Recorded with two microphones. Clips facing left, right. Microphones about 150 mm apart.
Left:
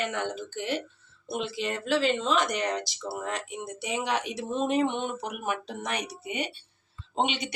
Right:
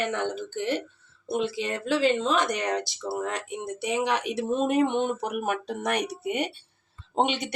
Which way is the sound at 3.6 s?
55° right (ahead or behind).